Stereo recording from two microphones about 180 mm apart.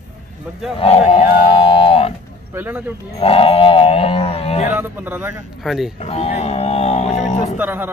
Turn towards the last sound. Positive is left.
turn(degrees=-10)  # may be behind; listen again after turning